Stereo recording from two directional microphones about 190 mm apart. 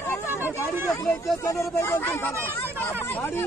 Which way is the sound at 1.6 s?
15° left (ahead or behind).